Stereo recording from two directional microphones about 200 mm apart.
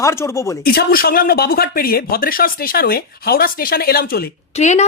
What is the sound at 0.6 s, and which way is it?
Speech, 50° left (ahead or behind).